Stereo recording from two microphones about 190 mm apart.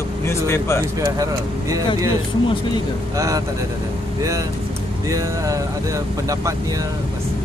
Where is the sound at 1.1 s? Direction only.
15° right (ahead or behind).